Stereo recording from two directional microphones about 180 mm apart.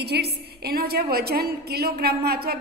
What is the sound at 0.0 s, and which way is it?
A woman's voice, 65° right (ahead or behind).